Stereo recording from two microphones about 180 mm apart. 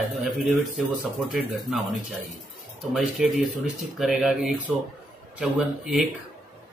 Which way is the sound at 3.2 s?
5° right (ahead or behind).